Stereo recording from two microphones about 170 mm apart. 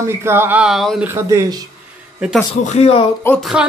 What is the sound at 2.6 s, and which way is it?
Speech, 40° left (ahead or behind).